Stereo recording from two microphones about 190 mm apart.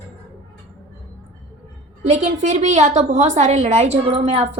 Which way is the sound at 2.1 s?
40° right (ahead or behind).